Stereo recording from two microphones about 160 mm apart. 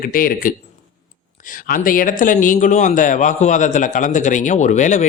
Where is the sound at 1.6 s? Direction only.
60° left (ahead or behind).